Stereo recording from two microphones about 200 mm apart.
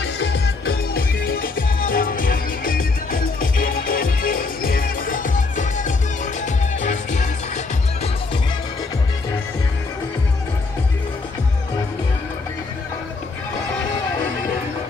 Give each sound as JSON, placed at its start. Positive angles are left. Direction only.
{"t": 0.0, "sound": "music", "side_deg": 60}